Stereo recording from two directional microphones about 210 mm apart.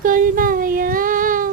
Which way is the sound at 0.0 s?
40° right (ahead or behind).